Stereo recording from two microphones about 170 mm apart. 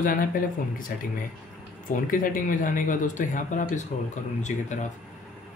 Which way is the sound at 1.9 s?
50° left (ahead or behind).